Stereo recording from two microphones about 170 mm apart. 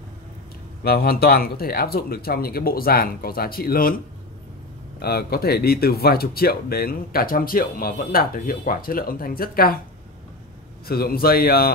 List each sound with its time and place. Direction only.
0.8 s speech: 65° left (ahead or behind)
5.0 s speech: 65° left (ahead or behind)
10.9 s speech: 60° left (ahead or behind)